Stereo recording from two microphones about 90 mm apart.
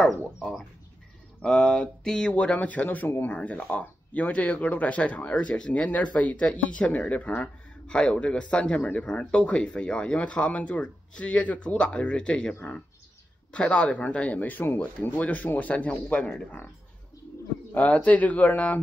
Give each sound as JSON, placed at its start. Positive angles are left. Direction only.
{"t": 0.4, "sound": "a sound", "side_deg": 0}
{"t": 1.4, "sound": "speech", "side_deg": 10}
{"t": 17.7, "sound": "speech", "side_deg": 15}